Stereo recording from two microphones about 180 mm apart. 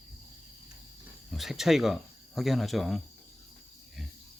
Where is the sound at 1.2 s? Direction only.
Centre (ahead or behind).